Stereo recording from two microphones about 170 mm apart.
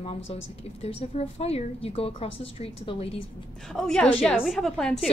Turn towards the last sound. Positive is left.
turn(degrees=0)  # may be behind; listen again after turning